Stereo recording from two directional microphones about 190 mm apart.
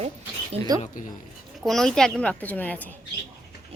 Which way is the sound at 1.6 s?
Centre (ahead or behind).